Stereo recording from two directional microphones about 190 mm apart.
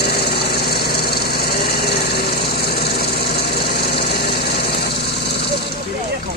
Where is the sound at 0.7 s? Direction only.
55° left (ahead or behind).